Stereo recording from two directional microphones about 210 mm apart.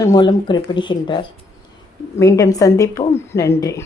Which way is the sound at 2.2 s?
15° left (ahead or behind).